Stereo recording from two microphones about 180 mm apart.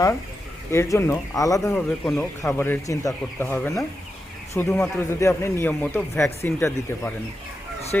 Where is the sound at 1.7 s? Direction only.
5° left (ahead or behind).